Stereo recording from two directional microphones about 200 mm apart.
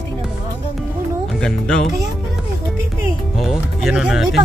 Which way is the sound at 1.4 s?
5° left (ahead or behind).